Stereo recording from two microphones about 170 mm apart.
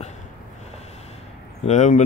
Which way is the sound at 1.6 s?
45° left (ahead or behind).